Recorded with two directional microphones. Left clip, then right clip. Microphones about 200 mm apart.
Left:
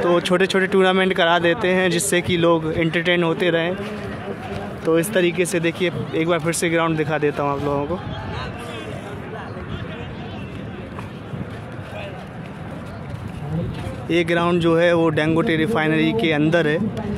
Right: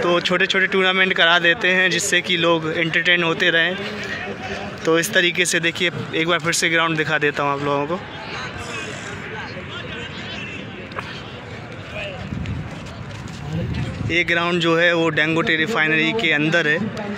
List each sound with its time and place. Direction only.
0.0 s speech: 20° left (ahead or behind)
4.8 s speech: centre (ahead or behind)
14.0 s speech: 20° left (ahead or behind)